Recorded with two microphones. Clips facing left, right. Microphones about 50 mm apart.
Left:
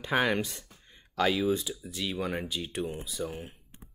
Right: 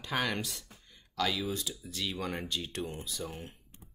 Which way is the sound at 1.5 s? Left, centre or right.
Centre.